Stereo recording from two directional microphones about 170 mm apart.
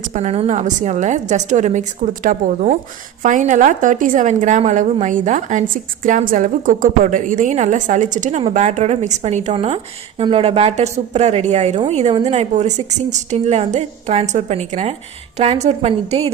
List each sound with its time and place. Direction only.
0.0 s a woman's voice: 45° right (ahead or behind)